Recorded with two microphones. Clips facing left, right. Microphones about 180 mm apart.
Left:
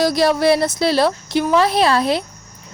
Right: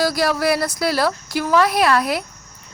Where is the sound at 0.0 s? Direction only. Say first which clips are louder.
Left 4 dB; 25° left (ahead or behind).